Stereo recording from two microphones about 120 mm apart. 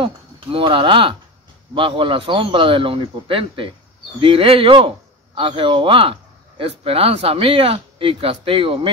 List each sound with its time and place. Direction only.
0.0 s speech: 50° right (ahead or behind)